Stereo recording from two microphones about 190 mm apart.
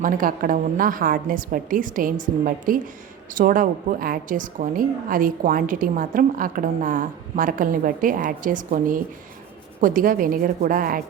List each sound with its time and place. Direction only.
0.0 s a woman's voice: 45° right (ahead or behind)